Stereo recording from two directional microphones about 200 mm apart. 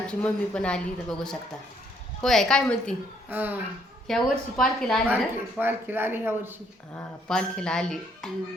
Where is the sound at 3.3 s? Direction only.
10° right (ahead or behind).